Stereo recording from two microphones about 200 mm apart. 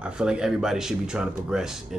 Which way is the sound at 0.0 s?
5° right (ahead or behind).